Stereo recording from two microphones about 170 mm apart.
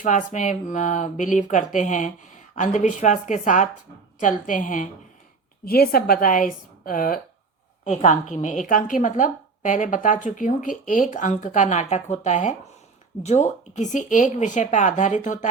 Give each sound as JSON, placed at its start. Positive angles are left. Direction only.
{"t": 0.0, "sound": "a woman's voice", "side_deg": 50}
{"t": 5.6, "sound": "a woman's voice", "side_deg": 60}
{"t": 7.9, "sound": "a woman's voice", "side_deg": 45}